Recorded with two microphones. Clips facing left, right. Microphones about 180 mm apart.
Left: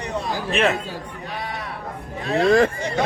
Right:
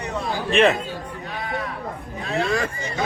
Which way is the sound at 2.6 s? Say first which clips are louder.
Left 5 dB; 70° left (ahead or behind).